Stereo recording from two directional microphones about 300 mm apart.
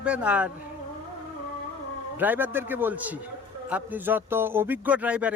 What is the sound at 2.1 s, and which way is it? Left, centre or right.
A man's voice, centre.